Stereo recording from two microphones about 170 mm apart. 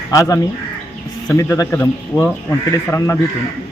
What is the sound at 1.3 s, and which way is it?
A man's voice, 15° left (ahead or behind).